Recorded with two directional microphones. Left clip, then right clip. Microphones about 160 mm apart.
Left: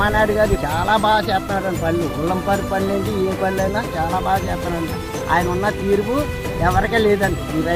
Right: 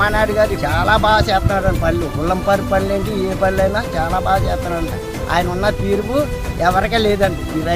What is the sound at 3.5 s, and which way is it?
Speech, 20° right (ahead or behind).